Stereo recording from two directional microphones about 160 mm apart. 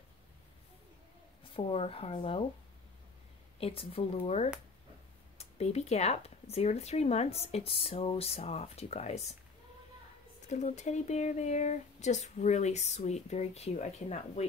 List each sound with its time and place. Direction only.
1.5 s speech: 35° left (ahead or behind)
3.5 s speech: 35° left (ahead or behind)
10.5 s speech: 45° left (ahead or behind)